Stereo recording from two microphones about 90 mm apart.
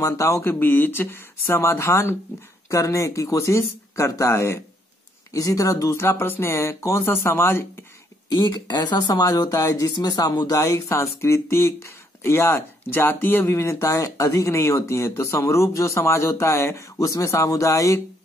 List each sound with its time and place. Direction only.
0.0 s speech: 35° left (ahead or behind)
8.3 s speech: 60° left (ahead or behind); by 9.8 s 40° left (ahead or behind)
9.8 s speech: 50° left (ahead or behind)
10.6 s speech: 30° left (ahead or behind)